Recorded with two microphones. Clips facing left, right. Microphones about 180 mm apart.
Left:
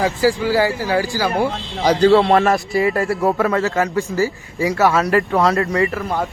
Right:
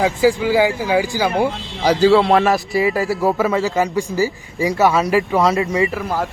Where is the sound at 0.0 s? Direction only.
15° right (ahead or behind).